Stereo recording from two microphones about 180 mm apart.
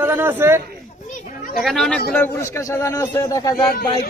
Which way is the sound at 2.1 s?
15° left (ahead or behind).